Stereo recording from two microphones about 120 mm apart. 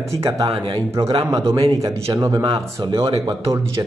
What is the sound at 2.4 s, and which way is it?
Speech, 45° right (ahead or behind).